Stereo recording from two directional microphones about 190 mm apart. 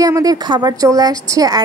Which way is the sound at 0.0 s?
20° right (ahead or behind).